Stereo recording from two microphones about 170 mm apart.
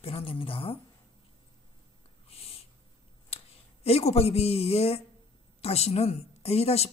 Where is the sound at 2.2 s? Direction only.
35° left (ahead or behind).